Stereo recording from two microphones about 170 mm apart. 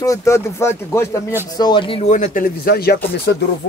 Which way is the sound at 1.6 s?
25° left (ahead or behind).